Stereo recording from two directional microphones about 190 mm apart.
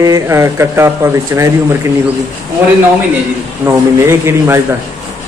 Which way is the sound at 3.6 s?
15° right (ahead or behind).